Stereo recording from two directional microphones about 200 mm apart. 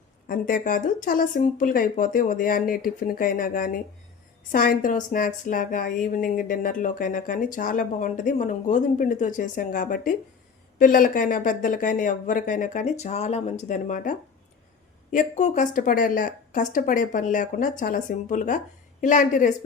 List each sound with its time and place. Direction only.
0.3 s a woman's voice: 45° left (ahead or behind)